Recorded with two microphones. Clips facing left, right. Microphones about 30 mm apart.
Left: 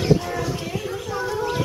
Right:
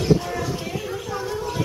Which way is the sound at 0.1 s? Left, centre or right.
Centre.